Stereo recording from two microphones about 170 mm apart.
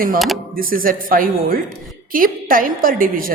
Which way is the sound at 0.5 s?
55° right (ahead or behind).